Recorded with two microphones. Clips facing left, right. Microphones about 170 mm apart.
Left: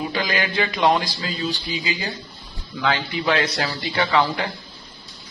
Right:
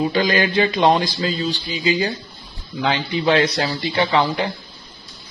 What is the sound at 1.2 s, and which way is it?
Speech, 35° right (ahead or behind).